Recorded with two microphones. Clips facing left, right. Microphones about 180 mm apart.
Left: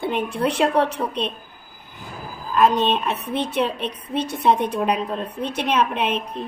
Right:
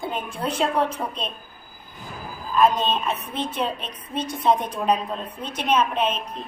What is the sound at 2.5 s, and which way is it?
A woman's voice, 70° left (ahead or behind).